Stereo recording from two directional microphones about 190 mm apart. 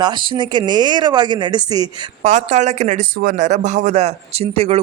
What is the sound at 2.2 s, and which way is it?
Speech, 40° right (ahead or behind).